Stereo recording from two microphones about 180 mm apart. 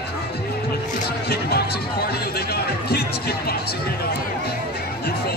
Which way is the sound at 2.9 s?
60° left (ahead or behind).